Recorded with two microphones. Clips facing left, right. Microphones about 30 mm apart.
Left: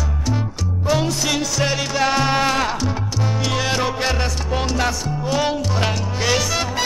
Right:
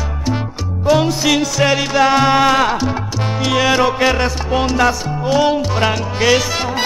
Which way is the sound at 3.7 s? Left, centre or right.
Right.